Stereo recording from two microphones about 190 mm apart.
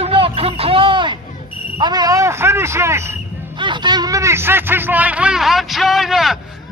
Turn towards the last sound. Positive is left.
turn(degrees=0)  # may be behind; listen again after turning